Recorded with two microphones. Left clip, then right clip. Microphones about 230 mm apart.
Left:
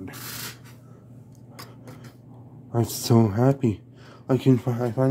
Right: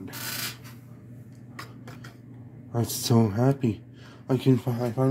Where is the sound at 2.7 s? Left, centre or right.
Left.